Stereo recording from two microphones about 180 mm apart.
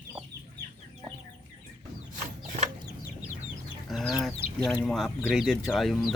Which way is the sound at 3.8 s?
Centre (ahead or behind).